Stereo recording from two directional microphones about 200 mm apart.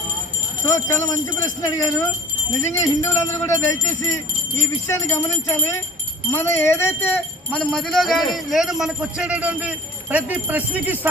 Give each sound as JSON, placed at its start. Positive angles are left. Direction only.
{"t": 0.7, "sound": "speech", "side_deg": 15}
{"t": 4.9, "sound": "speech", "side_deg": 15}